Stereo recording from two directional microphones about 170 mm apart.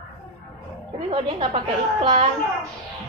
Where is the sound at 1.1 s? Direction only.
35° right (ahead or behind).